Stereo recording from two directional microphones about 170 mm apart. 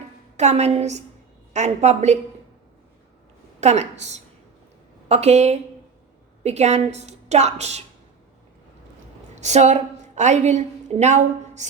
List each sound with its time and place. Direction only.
0.3 s a woman's voice: 40° right (ahead or behind)
3.6 s a woman's voice: 40° right (ahead or behind)
9.3 s a woman's voice: 45° right (ahead or behind)